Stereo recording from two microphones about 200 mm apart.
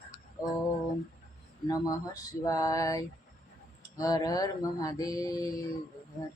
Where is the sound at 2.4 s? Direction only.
15° left (ahead or behind).